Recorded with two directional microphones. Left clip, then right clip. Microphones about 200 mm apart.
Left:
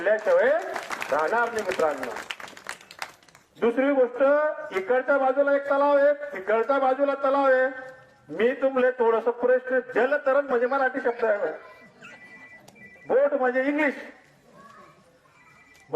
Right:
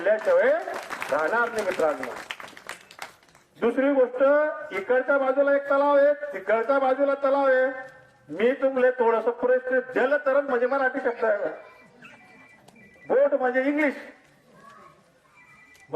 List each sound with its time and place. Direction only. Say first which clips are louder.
0.0 s a man's voice: even; 20° left (ahead or behind)
2.0 s speech: left 1 dB; 50° left (ahead or behind)
2.7 s a sound: left 2 dB; 25° left (ahead or behind)
3.6 s a man's voice: even; 20° left (ahead or behind)
13.1 s a man's voice: even; 20° left (ahead or behind)